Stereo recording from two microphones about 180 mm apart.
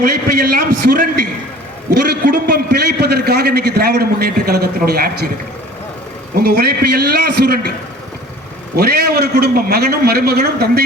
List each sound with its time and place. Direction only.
0.0 s a man's voice: 55° right (ahead or behind)
6.4 s a man's voice: 60° right (ahead or behind)
8.7 s a man's voice: 60° right (ahead or behind)